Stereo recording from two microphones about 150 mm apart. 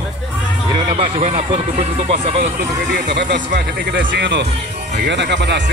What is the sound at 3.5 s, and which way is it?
Speech, 90° right.